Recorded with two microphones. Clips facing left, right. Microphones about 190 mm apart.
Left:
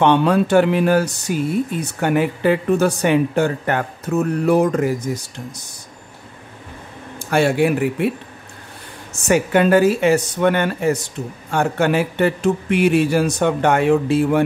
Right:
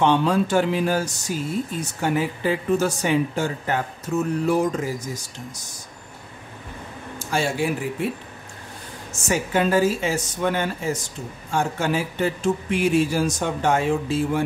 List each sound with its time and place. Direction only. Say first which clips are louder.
0.0 s speech: left 4 dB; 60° left (ahead or behind)
7.2 s speech: left 7 dB; 60° left (ahead or behind)
9.3 s speech: left 6 dB; 65° left (ahead or behind)